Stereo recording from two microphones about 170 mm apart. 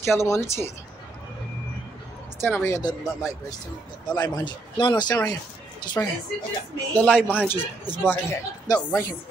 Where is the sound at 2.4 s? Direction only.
15° left (ahead or behind).